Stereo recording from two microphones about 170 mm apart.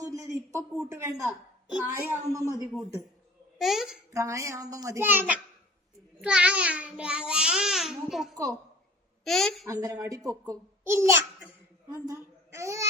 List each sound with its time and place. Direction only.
0.0 s a sound: 20° right (ahead or behind)
1.8 s a child's voice: 15° right (ahead or behind)
3.6 s speech: centre (ahead or behind)
4.1 s a child's voice: 15° right (ahead or behind); by 9.6 s centre (ahead or behind)
9.6 s a child's voice: 20° right (ahead or behind)